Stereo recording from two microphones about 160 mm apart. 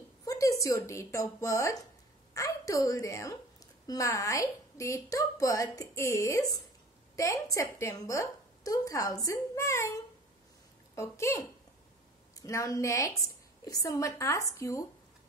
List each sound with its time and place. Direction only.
0.2 s a woman's voice: 20° left (ahead or behind)
11.0 s a woman's voice: 20° left (ahead or behind)